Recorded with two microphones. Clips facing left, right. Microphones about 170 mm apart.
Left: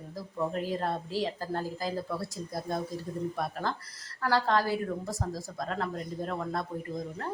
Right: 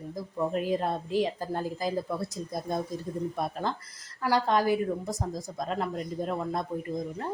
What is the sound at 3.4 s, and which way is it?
A woman's voice, 20° right (ahead or behind).